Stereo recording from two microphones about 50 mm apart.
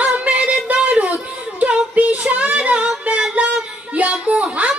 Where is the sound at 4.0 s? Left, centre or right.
Right.